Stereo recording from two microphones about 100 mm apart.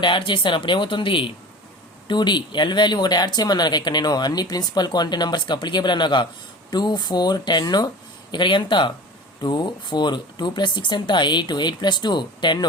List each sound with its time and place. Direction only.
0.0 s speech: 60° left (ahead or behind)